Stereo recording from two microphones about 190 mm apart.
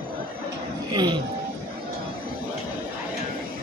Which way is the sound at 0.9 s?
20° right (ahead or behind).